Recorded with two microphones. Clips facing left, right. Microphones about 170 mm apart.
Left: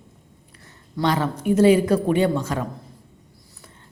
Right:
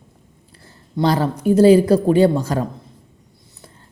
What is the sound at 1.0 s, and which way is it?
Speech, 35° right (ahead or behind).